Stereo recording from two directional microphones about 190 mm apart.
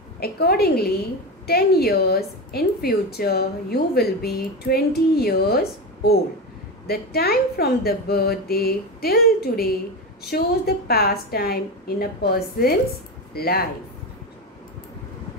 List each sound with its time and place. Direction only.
0.2 s a woman's voice: 55° left (ahead or behind)